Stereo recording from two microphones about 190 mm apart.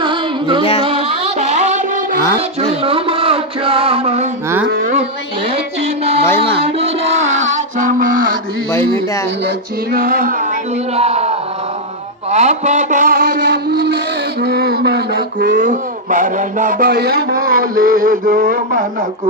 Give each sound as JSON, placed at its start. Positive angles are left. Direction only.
{"t": 0.0, "sound": "music", "side_deg": -25}
{"t": 2.6, "sound": "a sound", "side_deg": -30}
{"t": 4.4, "sound": "a sound", "side_deg": -10}
{"t": 4.7, "sound": "a sound", "side_deg": -45}
{"t": 5.5, "sound": "music", "side_deg": -35}
{"t": 9.4, "sound": "music", "side_deg": -55}
{"t": 10.9, "sound": "speech", "side_deg": -35}
{"t": 12.3, "sound": "mantra", "side_deg": -35}
{"t": 14.4, "sound": "speech", "side_deg": -55}